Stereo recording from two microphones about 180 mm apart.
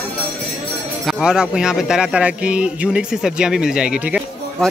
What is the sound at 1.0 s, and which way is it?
Speech, 5° right (ahead or behind).